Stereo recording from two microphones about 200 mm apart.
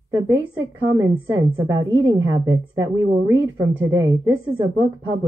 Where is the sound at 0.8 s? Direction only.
15° right (ahead or behind).